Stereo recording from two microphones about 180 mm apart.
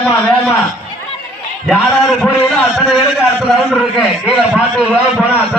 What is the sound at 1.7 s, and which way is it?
A man's voice, centre (ahead or behind).